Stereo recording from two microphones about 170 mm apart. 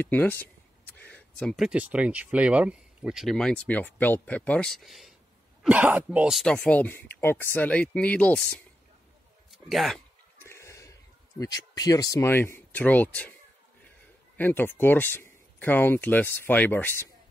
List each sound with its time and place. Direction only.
0.0 s speech: 10° left (ahead or behind)
9.7 s speech: centre (ahead or behind)
10.4 s a sound: 15° left (ahead or behind)
14.3 s speech: 10° left (ahead or behind)